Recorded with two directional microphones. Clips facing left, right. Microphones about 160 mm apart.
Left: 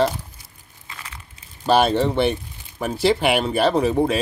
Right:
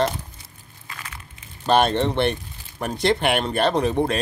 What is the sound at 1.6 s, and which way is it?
Speech, 5° left (ahead or behind).